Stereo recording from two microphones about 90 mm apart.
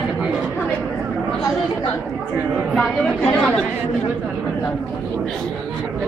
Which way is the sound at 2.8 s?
15° left (ahead or behind).